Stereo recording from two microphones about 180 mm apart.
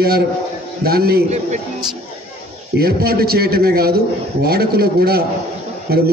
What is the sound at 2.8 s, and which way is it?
A man's voice, 60° right (ahead or behind).